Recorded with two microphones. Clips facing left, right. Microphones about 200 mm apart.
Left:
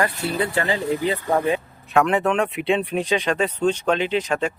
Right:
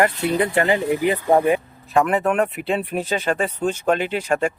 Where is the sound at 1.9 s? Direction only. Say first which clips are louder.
Right 1 dB; centre (ahead or behind).